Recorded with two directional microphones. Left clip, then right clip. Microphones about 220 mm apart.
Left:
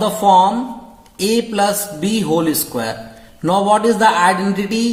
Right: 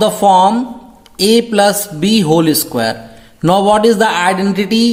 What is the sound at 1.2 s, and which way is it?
A man's voice, 40° right (ahead or behind).